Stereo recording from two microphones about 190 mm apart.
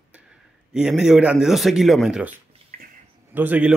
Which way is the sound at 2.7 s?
45° right (ahead or behind).